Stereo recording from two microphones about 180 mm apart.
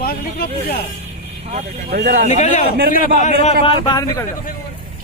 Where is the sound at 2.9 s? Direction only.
45° left (ahead or behind).